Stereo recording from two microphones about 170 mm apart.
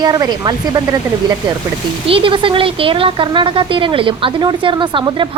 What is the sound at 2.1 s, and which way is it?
A woman's voice, 30° right (ahead or behind).